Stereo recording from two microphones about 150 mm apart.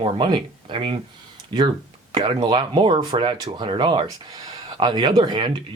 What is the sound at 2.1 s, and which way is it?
Speech, 30° right (ahead or behind).